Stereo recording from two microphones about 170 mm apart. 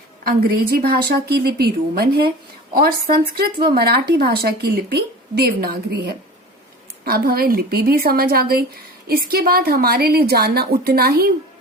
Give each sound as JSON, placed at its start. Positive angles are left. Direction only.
{"t": 0.3, "sound": "a woman's voice", "side_deg": -60}
{"t": 1.0, "sound": "a woman's voice", "side_deg": -70}
{"t": 7.0, "sound": "a woman's voice", "side_deg": -60}